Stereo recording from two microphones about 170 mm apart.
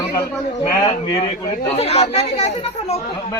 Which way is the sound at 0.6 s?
20° left (ahead or behind).